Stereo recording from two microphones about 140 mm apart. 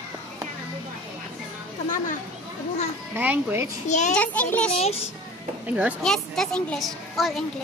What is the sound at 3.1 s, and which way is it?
Speech, 15° right (ahead or behind).